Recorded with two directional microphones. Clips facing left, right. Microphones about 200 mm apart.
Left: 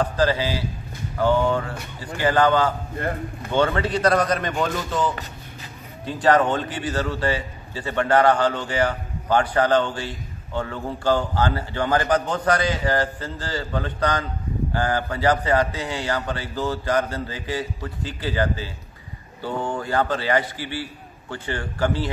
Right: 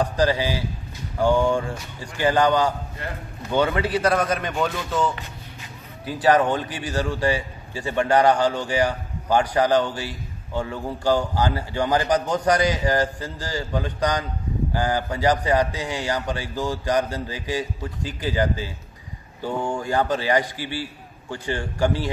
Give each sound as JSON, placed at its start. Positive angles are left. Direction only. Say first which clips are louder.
{"t": 0.0, "sound": "a man's voice", "louder": "even", "side_deg": -15}